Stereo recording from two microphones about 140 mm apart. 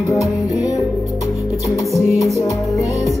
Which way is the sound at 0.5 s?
25° left (ahead or behind).